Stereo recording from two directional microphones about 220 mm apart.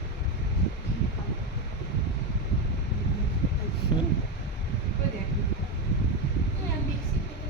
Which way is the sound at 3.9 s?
20° left (ahead or behind).